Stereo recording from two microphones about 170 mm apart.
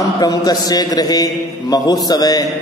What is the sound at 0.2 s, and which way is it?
A man's voice, 25° left (ahead or behind).